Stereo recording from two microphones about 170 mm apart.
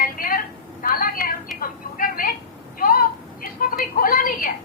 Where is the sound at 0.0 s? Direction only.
55° left (ahead or behind).